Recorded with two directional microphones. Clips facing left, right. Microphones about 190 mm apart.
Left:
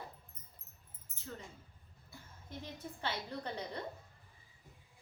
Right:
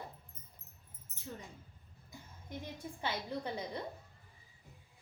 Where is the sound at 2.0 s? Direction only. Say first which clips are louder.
Right 3 dB; 15° right (ahead or behind).